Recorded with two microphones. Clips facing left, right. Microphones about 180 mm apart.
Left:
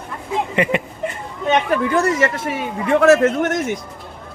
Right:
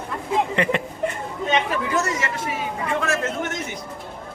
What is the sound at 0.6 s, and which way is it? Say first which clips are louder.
Speech: left 3 dB; 10° left (ahead or behind).